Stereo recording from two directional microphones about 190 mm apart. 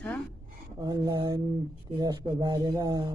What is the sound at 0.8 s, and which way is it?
Speech, 20° right (ahead or behind).